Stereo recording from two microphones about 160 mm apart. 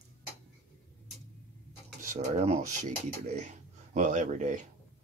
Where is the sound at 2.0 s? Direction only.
50° right (ahead or behind).